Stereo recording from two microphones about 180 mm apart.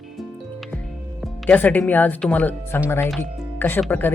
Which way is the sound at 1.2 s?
10° left (ahead or behind).